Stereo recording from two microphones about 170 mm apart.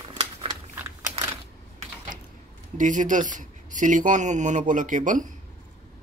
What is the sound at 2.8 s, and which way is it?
Speech, 50° right (ahead or behind).